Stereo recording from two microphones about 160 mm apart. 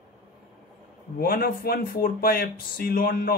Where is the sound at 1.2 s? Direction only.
70° left (ahead or behind).